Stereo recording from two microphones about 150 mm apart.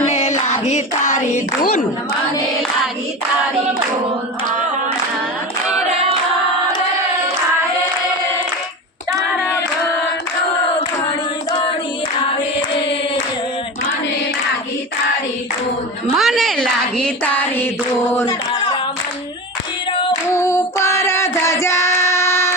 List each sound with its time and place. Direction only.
0.0 s music: 45° left (ahead or behind)
16.1 s a sound: centre (ahead or behind)
20.3 s child singing: 20° left (ahead or behind)